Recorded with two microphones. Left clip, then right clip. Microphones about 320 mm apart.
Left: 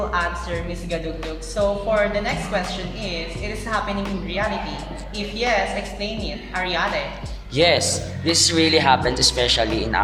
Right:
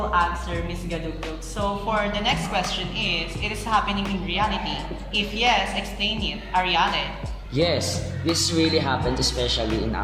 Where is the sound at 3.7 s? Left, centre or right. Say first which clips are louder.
Right 2 dB; centre.